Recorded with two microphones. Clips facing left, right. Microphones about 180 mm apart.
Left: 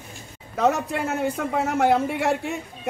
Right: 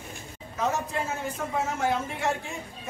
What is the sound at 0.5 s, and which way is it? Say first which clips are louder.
A man's voice: left 6 dB; 70° left (ahead or behind).